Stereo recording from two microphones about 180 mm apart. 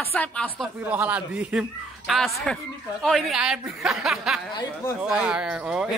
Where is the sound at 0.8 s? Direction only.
10° right (ahead or behind).